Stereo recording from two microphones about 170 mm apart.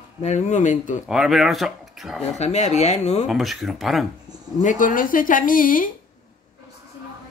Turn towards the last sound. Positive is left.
turn(degrees=55)  # may be behind; listen again after turning